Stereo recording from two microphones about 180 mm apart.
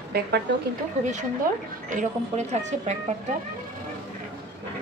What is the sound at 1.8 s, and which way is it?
Speech, 45° right (ahead or behind).